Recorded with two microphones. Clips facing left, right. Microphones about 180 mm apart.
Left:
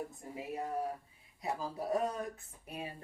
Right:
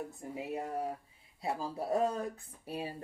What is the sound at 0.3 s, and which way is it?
Speech, 25° right (ahead or behind).